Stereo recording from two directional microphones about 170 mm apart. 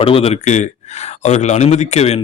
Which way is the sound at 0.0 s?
35° left (ahead or behind).